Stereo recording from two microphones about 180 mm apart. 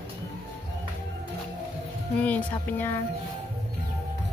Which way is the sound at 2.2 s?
10° left (ahead or behind).